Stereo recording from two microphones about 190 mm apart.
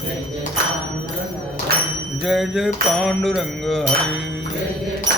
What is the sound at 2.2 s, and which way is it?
Music, centre (ahead or behind).